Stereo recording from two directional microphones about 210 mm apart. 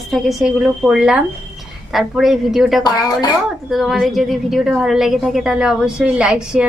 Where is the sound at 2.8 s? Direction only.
20° left (ahead or behind).